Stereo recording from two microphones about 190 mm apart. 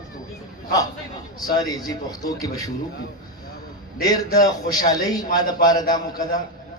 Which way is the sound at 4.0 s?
20° left (ahead or behind).